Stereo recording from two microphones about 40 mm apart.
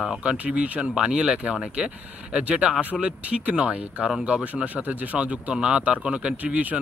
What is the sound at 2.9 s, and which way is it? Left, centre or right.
Speech, centre.